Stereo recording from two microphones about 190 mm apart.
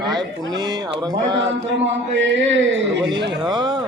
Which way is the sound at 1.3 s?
65° right (ahead or behind).